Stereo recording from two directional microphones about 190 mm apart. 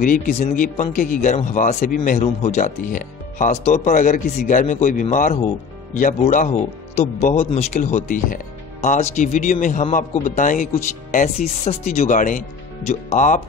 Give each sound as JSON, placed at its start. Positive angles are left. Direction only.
{"t": 0.0, "sound": "speech", "side_deg": 40}